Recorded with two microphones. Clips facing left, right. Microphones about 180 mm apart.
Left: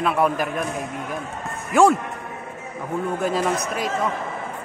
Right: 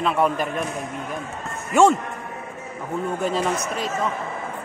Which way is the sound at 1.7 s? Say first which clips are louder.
Even; centre (ahead or behind).